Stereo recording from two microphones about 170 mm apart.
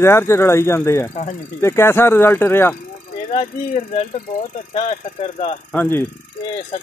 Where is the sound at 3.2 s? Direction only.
40° left (ahead or behind).